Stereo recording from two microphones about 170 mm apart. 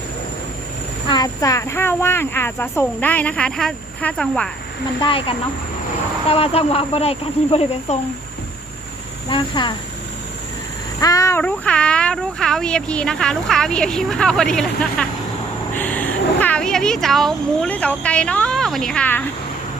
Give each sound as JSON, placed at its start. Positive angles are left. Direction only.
{"t": 1.0, "sound": "speech", "side_deg": 25}
{"t": 4.9, "sound": "speech", "side_deg": 30}
{"t": 9.3, "sound": "speech", "side_deg": 25}
{"t": 11.0, "sound": "speech", "side_deg": 20}